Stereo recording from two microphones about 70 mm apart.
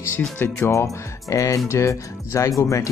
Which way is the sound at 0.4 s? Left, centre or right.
Left.